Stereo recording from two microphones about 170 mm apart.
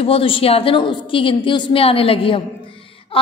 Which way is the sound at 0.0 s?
35° left (ahead or behind).